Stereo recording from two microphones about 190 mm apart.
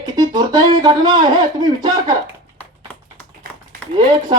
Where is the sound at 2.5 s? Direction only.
10° left (ahead or behind).